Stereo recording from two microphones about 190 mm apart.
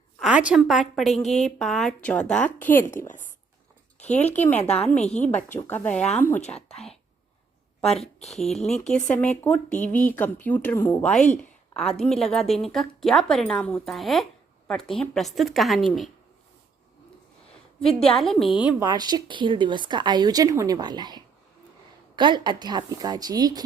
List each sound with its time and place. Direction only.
0.2 s a woman's voice: 5° right (ahead or behind)
1.2 s speech: 35° left (ahead or behind)
1.5 s a woman's voice: centre (ahead or behind)
4.5 s speech: 35° left (ahead or behind)
4.8 s a woman's voice: 5° left (ahead or behind)
5.0 s speech: 35° left (ahead or behind)
5.3 s a woman's voice: 10° left (ahead or behind)
8.0 s a woman's voice: centre (ahead or behind)
17.7 s a woman's voice: 5° left (ahead or behind)
18.8 s speech: 20° right (ahead or behind)